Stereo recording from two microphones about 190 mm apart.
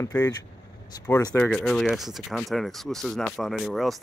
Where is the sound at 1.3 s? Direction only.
5° left (ahead or behind).